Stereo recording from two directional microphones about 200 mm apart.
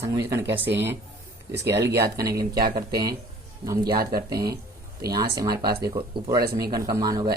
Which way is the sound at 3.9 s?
50° right (ahead or behind).